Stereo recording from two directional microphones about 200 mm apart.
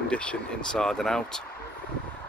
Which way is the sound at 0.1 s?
5° left (ahead or behind).